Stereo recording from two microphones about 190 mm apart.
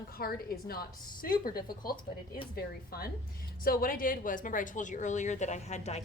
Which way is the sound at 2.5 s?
55° left (ahead or behind).